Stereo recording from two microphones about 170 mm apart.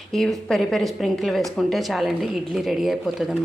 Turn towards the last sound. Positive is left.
turn(degrees=0)  # may be behind; listen again after turning